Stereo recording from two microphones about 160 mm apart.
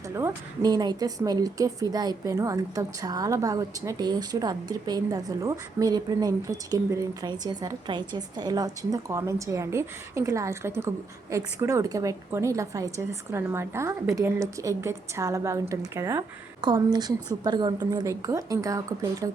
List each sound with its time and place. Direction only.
0.1 s a woman's voice: 20° right (ahead or behind)